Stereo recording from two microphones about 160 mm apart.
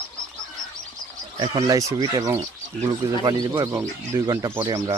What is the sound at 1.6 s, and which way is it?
Speech, 20° right (ahead or behind).